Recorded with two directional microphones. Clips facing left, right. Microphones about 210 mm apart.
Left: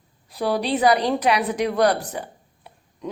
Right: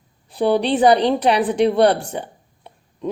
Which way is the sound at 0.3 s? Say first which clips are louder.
Right 5 dB; 30° right (ahead or behind).